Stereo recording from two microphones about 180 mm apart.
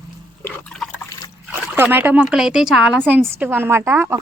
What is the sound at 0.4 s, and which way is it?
Liquid, 10° left (ahead or behind).